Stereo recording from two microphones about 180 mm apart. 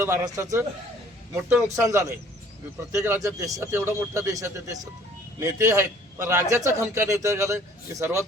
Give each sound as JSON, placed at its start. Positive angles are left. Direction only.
{"t": 0.0, "sound": "a man's voice", "side_deg": -15}
{"t": 1.7, "sound": "a man's voice", "side_deg": -15}